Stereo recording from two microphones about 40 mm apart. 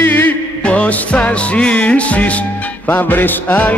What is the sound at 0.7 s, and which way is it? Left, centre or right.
Music, left.